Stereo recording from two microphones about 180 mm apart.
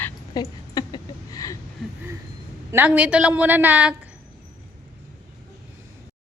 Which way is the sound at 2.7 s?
10° right (ahead or behind).